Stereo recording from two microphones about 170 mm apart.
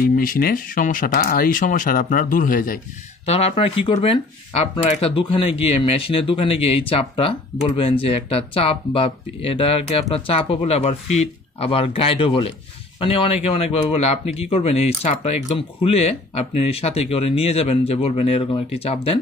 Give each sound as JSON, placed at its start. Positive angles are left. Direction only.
{"t": 0.0, "sound": "speech", "side_deg": 55}
{"t": 3.3, "sound": "speech", "side_deg": 35}